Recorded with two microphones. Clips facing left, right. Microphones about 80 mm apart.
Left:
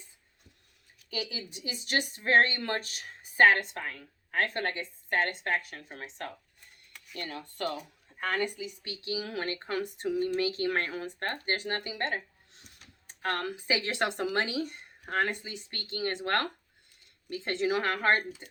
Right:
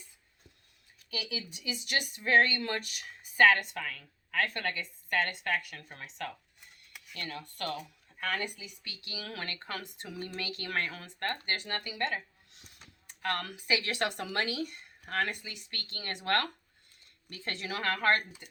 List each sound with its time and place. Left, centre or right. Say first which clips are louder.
1.1 s a woman's voice: left 2 dB; left